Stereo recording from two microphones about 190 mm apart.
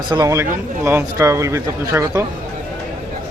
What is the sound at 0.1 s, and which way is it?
Speech, 20° right (ahead or behind).